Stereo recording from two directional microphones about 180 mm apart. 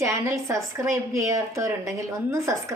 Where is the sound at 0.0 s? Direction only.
15° right (ahead or behind).